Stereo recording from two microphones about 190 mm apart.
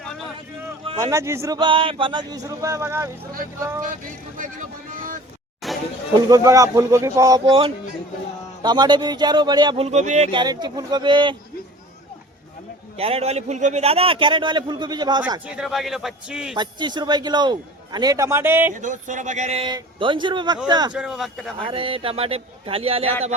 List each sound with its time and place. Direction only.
0.9 s speech: 15° right (ahead or behind)
4.9 s vehicle: 45° right (ahead or behind)
5.6 s a sound: centre (ahead or behind)
6.1 s a man's voice: 20° right (ahead or behind); by 10.2 s 40° right (ahead or behind)
10.3 s a man's voice: 20° right (ahead or behind)
13.0 s a man's voice: 30° right (ahead or behind)
15.4 s speech: 5° right (ahead or behind)
16.6 s a man's voice: 25° right (ahead or behind)
18.7 s a man's voice: 40° right (ahead or behind); by 20.9 s 20° right (ahead or behind)
20.9 s speech: 5° right (ahead or behind)
21.6 s a man's voice: 30° right (ahead or behind)